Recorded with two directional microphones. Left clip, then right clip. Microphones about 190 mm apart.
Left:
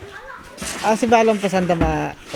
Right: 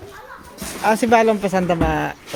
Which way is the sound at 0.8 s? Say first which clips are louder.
Right 1 dB; centre (ahead or behind).